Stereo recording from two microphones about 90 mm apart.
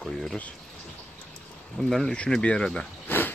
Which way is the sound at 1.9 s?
5° left (ahead or behind).